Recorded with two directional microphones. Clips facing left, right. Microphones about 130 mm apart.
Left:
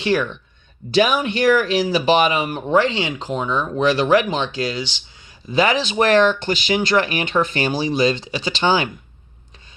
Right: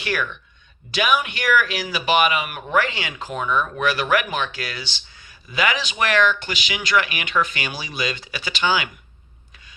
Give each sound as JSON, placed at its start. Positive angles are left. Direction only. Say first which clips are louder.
{"t": 0.0, "sound": "speech", "louder": "left 6 dB", "side_deg": 30}
{"t": 5.5, "sound": "speech", "louder": "left 5 dB", "side_deg": 30}